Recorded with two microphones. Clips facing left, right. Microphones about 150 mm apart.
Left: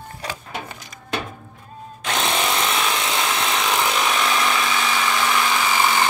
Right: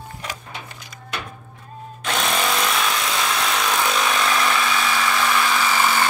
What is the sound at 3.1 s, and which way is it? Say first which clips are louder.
Tools: even; 20° left (ahead or behind).